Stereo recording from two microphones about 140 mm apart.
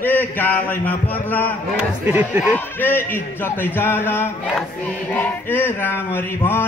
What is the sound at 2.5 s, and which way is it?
Speech, 15° left (ahead or behind).